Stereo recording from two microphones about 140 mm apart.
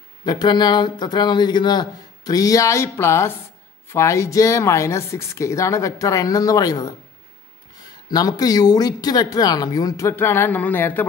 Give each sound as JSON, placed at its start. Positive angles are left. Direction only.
{"t": 0.2, "sound": "speech", "side_deg": 30}
{"t": 8.1, "sound": "speech", "side_deg": 25}